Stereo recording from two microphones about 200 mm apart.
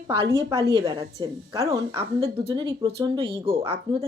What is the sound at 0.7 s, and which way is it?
A woman's voice, 25° right (ahead or behind).